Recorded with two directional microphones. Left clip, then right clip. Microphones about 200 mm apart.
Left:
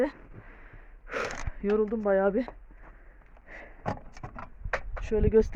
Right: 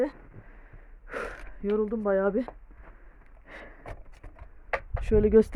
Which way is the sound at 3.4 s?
50° right (ahead or behind).